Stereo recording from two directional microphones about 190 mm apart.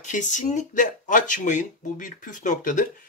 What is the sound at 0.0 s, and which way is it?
Speech, 40° left (ahead or behind).